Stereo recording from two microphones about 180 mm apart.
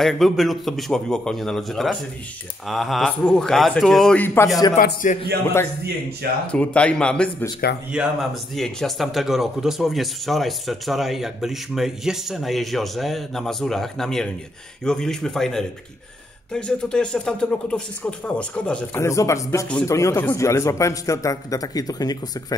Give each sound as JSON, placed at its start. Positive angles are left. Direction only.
{"t": 0.0, "sound": "speech", "side_deg": 0}
{"t": 4.7, "sound": "speech", "side_deg": 50}
{"t": 6.4, "sound": "speech", "side_deg": 5}